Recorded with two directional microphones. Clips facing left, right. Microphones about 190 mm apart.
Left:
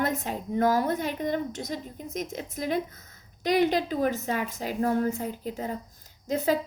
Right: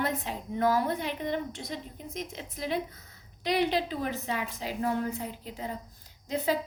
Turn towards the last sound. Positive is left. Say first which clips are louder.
# left 4 dB
turn(degrees=45)  # may be behind; listen again after turning